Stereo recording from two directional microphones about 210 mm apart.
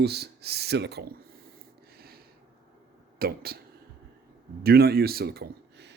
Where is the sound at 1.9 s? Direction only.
45° right (ahead or behind).